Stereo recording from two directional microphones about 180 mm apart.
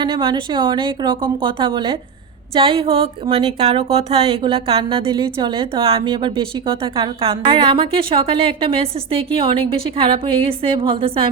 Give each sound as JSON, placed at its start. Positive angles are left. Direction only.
{"t": 0.0, "sound": "a woman's voice", "side_deg": -25}